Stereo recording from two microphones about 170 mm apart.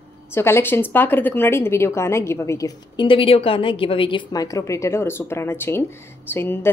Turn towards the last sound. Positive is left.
turn(degrees=15)  # may be behind; listen again after turning